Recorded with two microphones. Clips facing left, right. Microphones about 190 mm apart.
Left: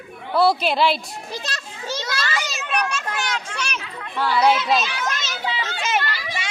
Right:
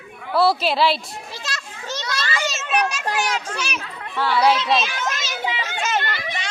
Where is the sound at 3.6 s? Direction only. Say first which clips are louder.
Right 1 dB; 5° right (ahead or behind).